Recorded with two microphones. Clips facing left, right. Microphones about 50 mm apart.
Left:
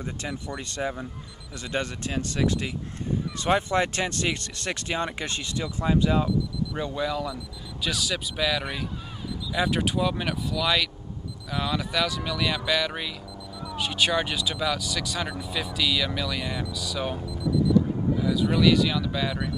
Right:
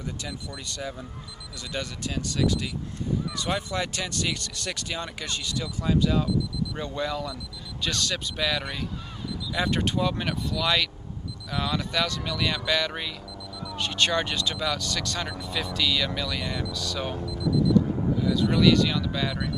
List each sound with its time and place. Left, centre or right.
0.2 s speech: left
6.8 s speech: centre
17.3 s a sound: centre
18.1 s speech: centre